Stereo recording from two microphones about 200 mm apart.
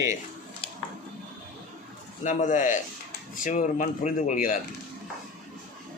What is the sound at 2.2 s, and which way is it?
Speech, 40° left (ahead or behind).